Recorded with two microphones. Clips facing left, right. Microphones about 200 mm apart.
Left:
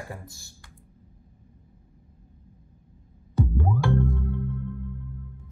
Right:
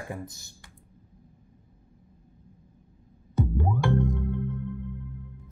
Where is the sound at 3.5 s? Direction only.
15° right (ahead or behind).